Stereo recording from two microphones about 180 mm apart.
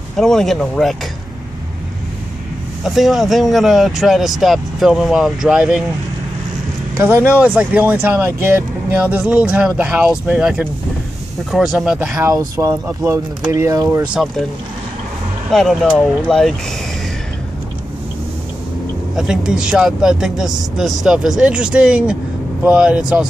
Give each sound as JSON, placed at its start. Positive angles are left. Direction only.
{"t": 0.2, "sound": "speech", "side_deg": 5}
{"t": 2.8, "sound": "speech", "side_deg": 0}
{"t": 7.0, "sound": "speech", "side_deg": -10}
{"t": 12.3, "sound": "speech", "side_deg": -15}
{"t": 14.1, "sound": "speech", "side_deg": 0}
{"t": 15.5, "sound": "speech", "side_deg": 0}
{"t": 19.1, "sound": "speech", "side_deg": -5}